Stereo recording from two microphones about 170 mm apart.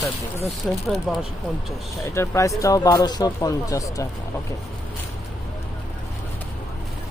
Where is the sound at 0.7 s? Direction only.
5° left (ahead or behind).